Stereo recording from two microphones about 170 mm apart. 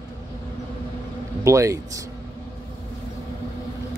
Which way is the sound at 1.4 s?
15° right (ahead or behind).